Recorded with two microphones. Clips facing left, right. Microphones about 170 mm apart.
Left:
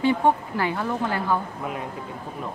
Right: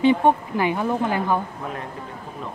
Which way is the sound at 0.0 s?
20° right (ahead or behind).